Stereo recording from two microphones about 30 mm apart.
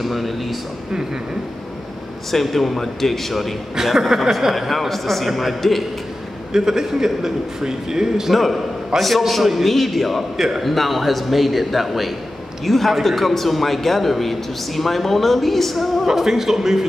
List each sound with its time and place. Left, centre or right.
0.0 s a man's voice: centre
2.3 s a man's voice: centre
3.7 s a man's voice: centre
4.6 s a man's voice: centre
6.5 s a man's voice: centre
8.3 s a man's voice: centre
10.3 s a man's voice: centre
10.6 s a man's voice: centre
16.1 s a man's voice: centre